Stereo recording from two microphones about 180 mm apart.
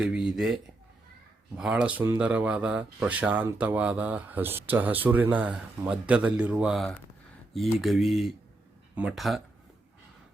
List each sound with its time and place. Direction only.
0.0 s speech: 5° right (ahead or behind)